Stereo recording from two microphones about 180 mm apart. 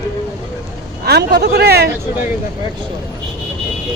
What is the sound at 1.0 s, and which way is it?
Speech, 65° right (ahead or behind).